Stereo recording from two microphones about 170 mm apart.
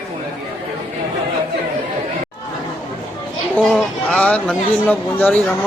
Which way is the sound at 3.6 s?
10° left (ahead or behind).